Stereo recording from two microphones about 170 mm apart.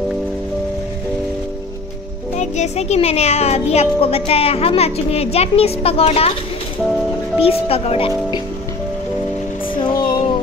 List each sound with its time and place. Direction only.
2.3 s a child's voice: 45° left (ahead or behind)
7.3 s a child's voice: 35° left (ahead or behind)
9.8 s music: 25° left (ahead or behind)